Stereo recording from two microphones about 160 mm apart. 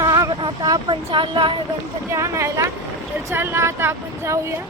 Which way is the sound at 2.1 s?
20° right (ahead or behind).